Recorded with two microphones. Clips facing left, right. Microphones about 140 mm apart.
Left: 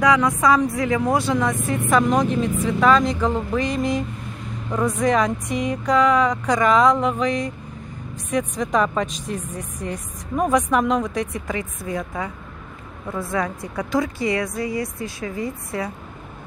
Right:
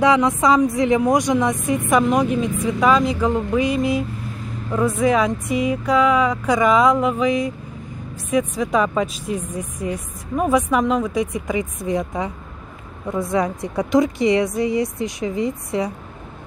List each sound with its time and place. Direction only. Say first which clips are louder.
0.0 s speech: right 2 dB; 25° right (ahead or behind)